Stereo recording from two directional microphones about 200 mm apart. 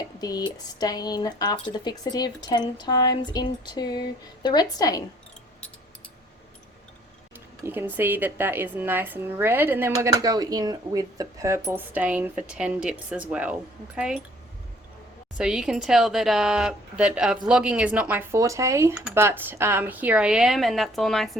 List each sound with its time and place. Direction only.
0.2 s a woman's voice: 20° left (ahead or behind)
7.6 s a woman's voice: 10° right (ahead or behind)
15.4 s a woman's voice: 5° right (ahead or behind)